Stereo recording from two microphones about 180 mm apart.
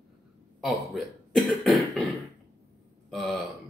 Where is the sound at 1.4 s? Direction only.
Centre (ahead or behind).